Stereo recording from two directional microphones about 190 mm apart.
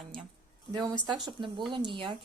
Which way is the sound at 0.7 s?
20° right (ahead or behind).